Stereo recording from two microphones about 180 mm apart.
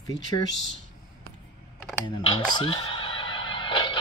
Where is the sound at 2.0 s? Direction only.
25° left (ahead or behind).